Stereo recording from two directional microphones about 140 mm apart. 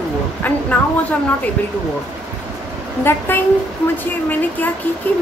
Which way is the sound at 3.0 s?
15° left (ahead or behind).